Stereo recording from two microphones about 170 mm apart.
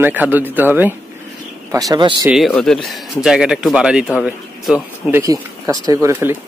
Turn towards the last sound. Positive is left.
turn(degrees=-15)  # may be behind; listen again after turning